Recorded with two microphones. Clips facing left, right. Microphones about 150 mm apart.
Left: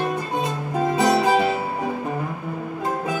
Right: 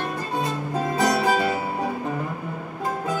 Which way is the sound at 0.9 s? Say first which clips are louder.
Left 3 dB; 20° left (ahead or behind).